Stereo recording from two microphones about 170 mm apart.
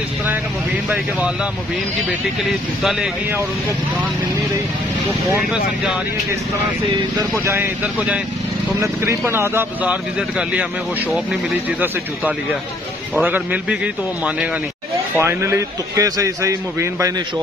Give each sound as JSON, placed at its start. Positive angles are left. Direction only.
{"t": 2.8, "sound": "speech", "side_deg": 0}
{"t": 5.4, "sound": "speech", "side_deg": -5}
{"t": 7.2, "sound": "speech", "side_deg": -15}
{"t": 13.1, "sound": "speech", "side_deg": -10}
{"t": 15.1, "sound": "speech", "side_deg": -15}